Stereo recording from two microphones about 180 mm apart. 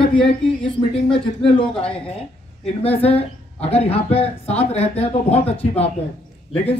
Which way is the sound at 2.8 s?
35° left (ahead or behind).